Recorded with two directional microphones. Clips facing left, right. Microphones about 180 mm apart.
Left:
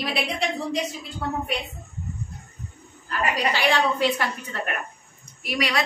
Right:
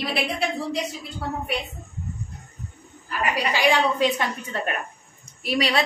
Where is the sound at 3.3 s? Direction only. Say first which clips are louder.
Right 2 dB; 10° right (ahead or behind).